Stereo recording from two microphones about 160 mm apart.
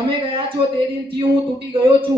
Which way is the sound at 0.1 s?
30° right (ahead or behind).